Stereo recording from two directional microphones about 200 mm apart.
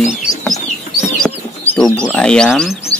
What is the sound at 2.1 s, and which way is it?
Speech, 5° left (ahead or behind).